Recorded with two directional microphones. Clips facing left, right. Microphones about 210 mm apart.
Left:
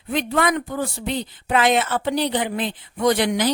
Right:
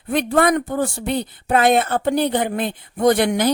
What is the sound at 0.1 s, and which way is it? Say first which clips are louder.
A woman's voice: right 4 dB; 50° right (ahead or behind).